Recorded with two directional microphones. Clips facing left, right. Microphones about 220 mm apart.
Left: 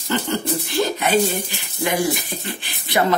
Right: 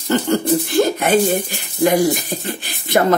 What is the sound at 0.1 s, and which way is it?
Speech, 45° right (ahead or behind).